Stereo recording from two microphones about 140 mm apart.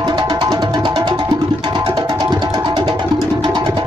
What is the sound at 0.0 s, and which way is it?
Music, 35° right (ahead or behind).